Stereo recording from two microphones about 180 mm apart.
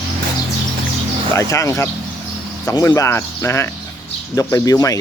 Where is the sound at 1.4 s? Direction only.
20° left (ahead or behind).